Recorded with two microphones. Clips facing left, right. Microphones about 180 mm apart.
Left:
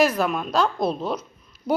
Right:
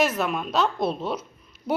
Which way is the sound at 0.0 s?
Centre (ahead or behind).